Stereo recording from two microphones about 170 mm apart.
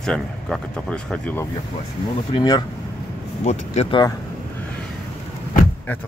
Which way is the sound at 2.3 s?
25° left (ahead or behind).